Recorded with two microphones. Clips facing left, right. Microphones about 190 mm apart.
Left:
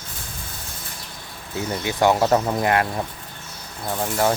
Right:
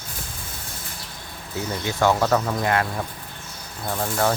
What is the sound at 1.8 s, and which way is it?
Speech, 15° left (ahead or behind).